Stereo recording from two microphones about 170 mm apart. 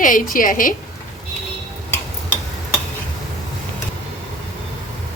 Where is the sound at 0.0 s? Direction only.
50° left (ahead or behind).